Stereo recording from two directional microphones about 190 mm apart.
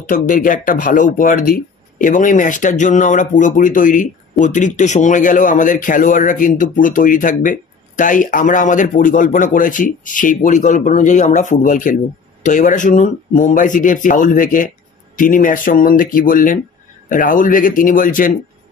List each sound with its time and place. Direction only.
0.0 s speech: 45° left (ahead or behind)